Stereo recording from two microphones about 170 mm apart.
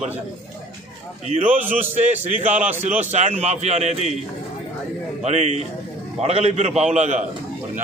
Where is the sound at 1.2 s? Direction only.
40° right (ahead or behind).